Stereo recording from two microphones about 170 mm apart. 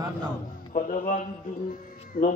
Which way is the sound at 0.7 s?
50° left (ahead or behind).